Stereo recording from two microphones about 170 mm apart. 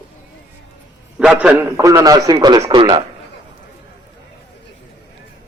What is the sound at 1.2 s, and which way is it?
A man's voice, 10° right (ahead or behind).